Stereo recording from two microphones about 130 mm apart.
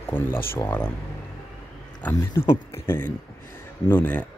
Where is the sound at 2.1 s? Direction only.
25° left (ahead or behind).